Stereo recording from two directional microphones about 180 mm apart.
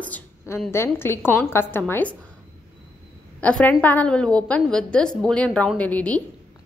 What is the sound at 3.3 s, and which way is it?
A woman's voice, 5° left (ahead or behind).